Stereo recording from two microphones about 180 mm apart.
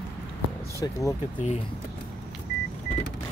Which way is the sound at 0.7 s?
15° left (ahead or behind).